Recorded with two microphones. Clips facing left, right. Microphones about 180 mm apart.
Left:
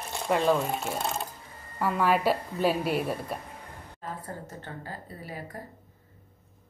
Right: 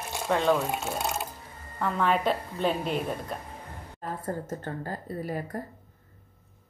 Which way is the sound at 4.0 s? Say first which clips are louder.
Right 5 dB; 45° right (ahead or behind).